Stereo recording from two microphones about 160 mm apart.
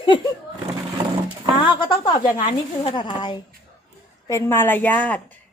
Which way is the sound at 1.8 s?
30° left (ahead or behind).